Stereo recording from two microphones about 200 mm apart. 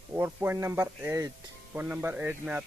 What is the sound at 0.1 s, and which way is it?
Speech, 10° right (ahead or behind).